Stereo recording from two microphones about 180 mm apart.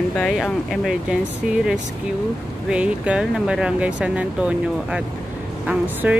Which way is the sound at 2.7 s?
5° right (ahead or behind).